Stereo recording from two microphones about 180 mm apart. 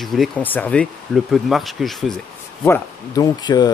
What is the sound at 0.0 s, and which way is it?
Speech, centre (ahead or behind).